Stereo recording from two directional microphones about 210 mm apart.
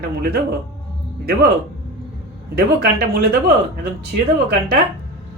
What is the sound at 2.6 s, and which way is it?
Speech, 45° right (ahead or behind).